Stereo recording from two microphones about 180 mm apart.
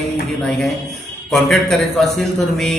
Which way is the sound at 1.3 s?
Centre (ahead or behind).